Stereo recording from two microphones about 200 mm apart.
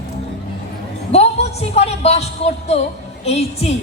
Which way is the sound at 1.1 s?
30° left (ahead or behind).